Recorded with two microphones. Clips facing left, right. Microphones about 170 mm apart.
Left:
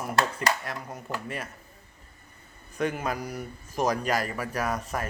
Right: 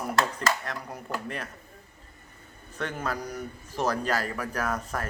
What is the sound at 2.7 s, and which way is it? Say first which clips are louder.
A man's voice: left 3 dB; 15° left (ahead or behind).